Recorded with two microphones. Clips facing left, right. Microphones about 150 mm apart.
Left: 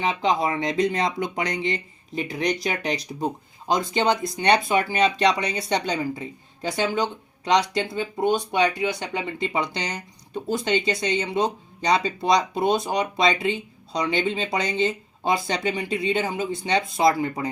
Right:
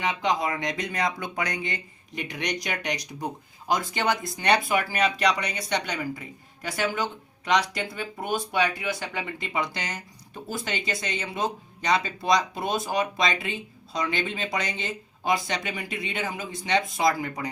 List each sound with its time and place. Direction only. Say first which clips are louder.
0.0 s speech: left 3 dB; 25° left (ahead or behind)